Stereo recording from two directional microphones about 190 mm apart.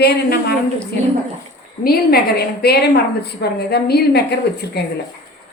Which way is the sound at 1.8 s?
55° left (ahead or behind).